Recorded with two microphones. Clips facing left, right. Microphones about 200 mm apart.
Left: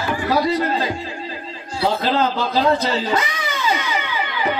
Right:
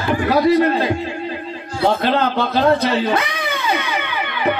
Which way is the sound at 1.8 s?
60° right (ahead or behind).